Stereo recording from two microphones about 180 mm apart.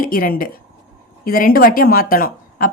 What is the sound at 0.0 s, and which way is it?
A woman's voice, 55° left (ahead or behind).